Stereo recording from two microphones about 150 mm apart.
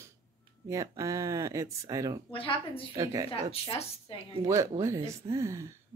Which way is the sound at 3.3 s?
40° left (ahead or behind).